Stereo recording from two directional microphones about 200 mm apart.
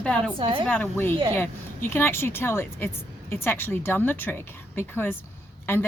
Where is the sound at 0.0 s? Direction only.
5° left (ahead or behind).